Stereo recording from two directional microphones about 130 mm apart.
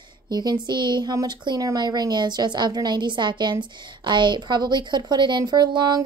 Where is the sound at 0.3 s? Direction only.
30° right (ahead or behind).